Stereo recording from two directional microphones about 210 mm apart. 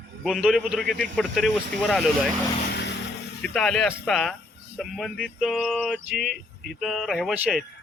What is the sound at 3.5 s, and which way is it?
Speech, centre (ahead or behind).